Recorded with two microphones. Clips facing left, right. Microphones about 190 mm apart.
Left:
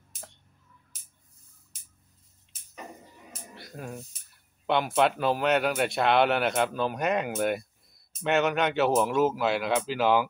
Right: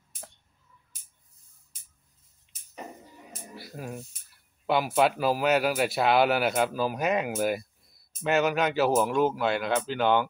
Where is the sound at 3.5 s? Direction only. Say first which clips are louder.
Right 1 dB; 5° right (ahead or behind).